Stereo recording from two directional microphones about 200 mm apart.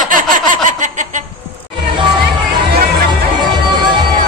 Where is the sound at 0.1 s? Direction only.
40° right (ahead or behind).